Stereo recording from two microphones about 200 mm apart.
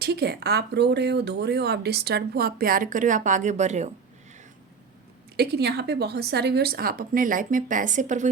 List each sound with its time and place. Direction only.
0.0 s speech: 55° right (ahead or behind); by 3.8 s 35° right (ahead or behind)
5.4 s speech: 55° right (ahead or behind); by 8.3 s 40° right (ahead or behind)